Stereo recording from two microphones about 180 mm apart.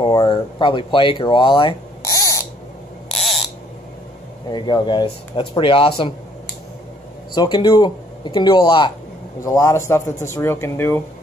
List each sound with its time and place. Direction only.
0.0 s speech: 25° left (ahead or behind)
3.1 s a sound: centre (ahead or behind)
4.5 s speech: 25° left (ahead or behind)
7.3 s speech: 25° left (ahead or behind)